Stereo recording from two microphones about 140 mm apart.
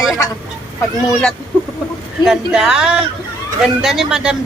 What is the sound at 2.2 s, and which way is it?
A man's voice, 5° right (ahead or behind).